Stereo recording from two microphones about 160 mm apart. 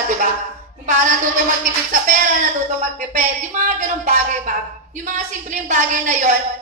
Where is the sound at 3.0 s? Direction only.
50° right (ahead or behind).